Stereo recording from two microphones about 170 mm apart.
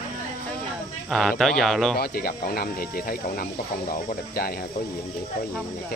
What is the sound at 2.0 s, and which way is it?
Speech, 60° left (ahead or behind).